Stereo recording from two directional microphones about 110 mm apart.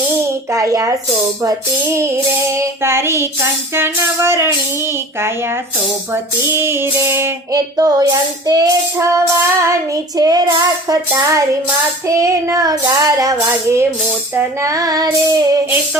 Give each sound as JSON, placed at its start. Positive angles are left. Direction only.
{"t": 0.2, "sound": "a sound", "side_deg": -30}
{"t": 1.4, "sound": "music", "side_deg": -30}
{"t": 6.4, "sound": "music", "side_deg": -25}
{"t": 8.4, "sound": "child singing", "side_deg": -35}
{"t": 11.1, "sound": "music", "side_deg": -30}
{"t": 14.6, "sound": "child singing", "side_deg": -30}